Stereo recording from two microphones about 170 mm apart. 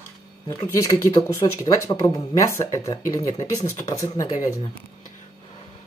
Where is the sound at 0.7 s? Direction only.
15° left (ahead or behind).